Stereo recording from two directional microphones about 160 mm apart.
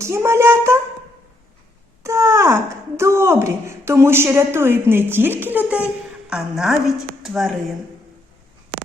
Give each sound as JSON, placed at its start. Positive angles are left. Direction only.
{"t": 0.0, "sound": "a woman's voice", "side_deg": -15}
{"t": 2.0, "sound": "wail", "side_deg": -20}
{"t": 3.0, "sound": "a woman's voice", "side_deg": -15}